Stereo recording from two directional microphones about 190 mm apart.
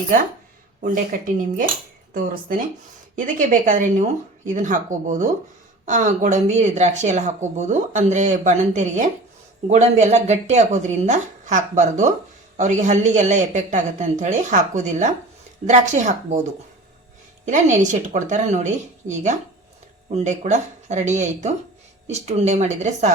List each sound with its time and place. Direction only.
1.1 s a woman's voice: 45° right (ahead or behind)
17.4 s speech: 40° right (ahead or behind)